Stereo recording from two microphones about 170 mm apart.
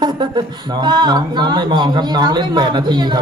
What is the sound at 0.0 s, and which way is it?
A woman's voice, 25° right (ahead or behind).